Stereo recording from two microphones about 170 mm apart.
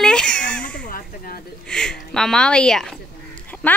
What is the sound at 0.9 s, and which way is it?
Speech, 60° left (ahead or behind).